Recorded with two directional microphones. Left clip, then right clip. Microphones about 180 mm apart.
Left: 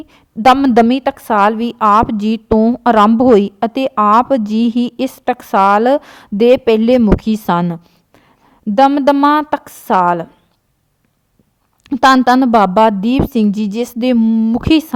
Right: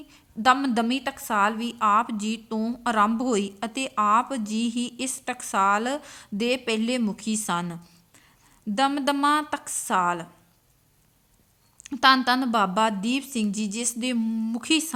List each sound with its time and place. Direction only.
0.1 s a woman's voice: 50° left (ahead or behind)
11.8 s a woman's voice: 50° left (ahead or behind)